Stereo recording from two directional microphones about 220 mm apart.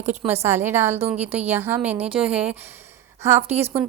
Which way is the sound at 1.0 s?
25° right (ahead or behind).